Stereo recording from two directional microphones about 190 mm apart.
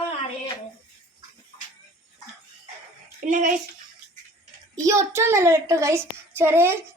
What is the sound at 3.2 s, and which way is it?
Speech, 45° right (ahead or behind).